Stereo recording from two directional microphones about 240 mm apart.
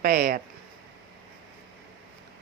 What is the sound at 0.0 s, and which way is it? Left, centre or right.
Speech, right.